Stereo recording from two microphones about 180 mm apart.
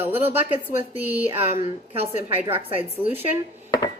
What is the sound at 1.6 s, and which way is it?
Speech, 35° right (ahead or behind).